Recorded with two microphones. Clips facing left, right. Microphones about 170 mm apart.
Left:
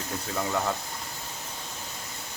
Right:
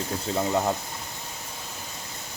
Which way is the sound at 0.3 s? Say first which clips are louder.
Right 4 dB; 25° right (ahead or behind).